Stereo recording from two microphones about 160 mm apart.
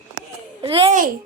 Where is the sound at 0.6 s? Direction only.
35° right (ahead or behind).